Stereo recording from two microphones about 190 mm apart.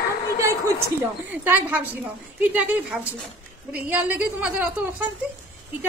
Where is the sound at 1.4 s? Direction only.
10° right (ahead or behind).